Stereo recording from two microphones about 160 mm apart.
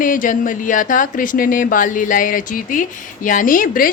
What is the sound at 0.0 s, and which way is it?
A woman's voice, 55° left (ahead or behind).